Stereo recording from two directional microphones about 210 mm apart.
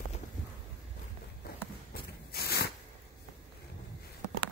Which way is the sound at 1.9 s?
50° left (ahead or behind).